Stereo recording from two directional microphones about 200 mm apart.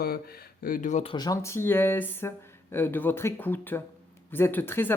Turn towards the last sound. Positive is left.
turn(degrees=10)  # may be behind; listen again after turning